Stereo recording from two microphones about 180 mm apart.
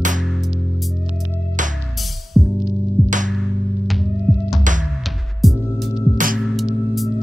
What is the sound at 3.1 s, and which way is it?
Music, 45° right (ahead or behind).